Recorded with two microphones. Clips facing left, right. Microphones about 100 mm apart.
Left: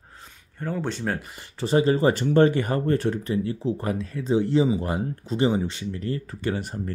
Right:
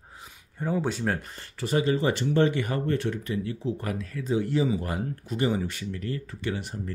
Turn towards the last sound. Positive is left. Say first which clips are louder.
# left 4 dB
turn(degrees=45)  # may be behind; listen again after turning